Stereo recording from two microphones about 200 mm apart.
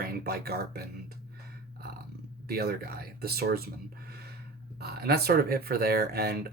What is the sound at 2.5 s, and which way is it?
Speech, 50° right (ahead or behind).